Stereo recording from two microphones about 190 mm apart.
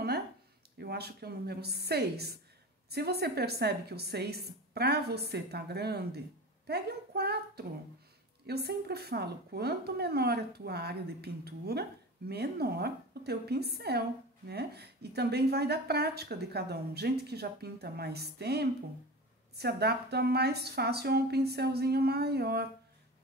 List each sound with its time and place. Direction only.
0.7 s a woman's voice: 55° right (ahead or behind)